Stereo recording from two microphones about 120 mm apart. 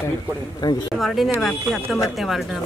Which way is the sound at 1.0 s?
Centre (ahead or behind).